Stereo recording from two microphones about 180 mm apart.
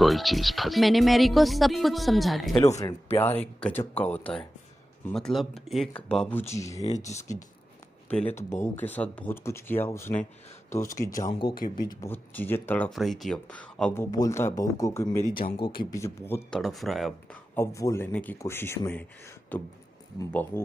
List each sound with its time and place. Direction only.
0.0 s speech: centre (ahead or behind)
2.8 s speech: 15° left (ahead or behind)
6.5 s speech: 15° left (ahead or behind)
7.0 s speech: 40° left (ahead or behind)
8.1 s speech: 10° left (ahead or behind)
12.0 s speech: 10° left (ahead or behind)
12.9 s speech: centre (ahead or behind)
14.1 s speech: 15° left (ahead or behind)
15.5 s speech: 30° left (ahead or behind)
15.9 s speech: 15° left (ahead or behind); by 17.4 s centre (ahead or behind)
17.6 s speech: 15° left (ahead or behind)